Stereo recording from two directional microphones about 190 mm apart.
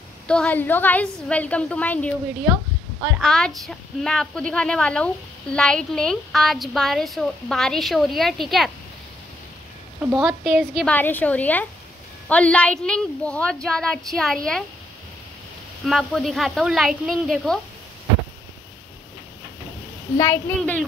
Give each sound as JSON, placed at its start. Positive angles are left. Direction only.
{"t": 0.3, "sound": "a woman's voice", "side_deg": 5}
{"t": 3.2, "sound": "speech", "side_deg": 5}
{"t": 10.1, "sound": "a woman's voice", "side_deg": 0}
{"t": 15.8, "sound": "speech", "side_deg": 0}
{"t": 20.2, "sound": "a woman's voice", "side_deg": 15}